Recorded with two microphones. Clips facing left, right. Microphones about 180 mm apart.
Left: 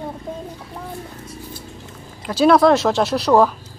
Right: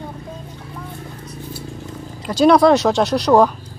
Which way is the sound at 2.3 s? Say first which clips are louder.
Right 1 dB; centre (ahead or behind).